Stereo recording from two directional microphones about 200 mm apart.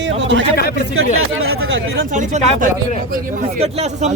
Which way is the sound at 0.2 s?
65° right (ahead or behind).